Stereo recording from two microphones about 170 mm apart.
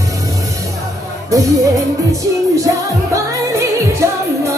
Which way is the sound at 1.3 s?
20° right (ahead or behind).